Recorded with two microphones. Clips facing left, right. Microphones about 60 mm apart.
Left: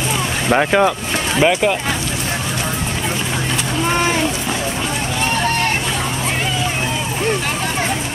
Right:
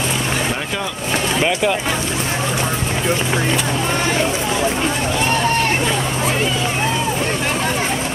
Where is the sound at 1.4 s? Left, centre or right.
Centre.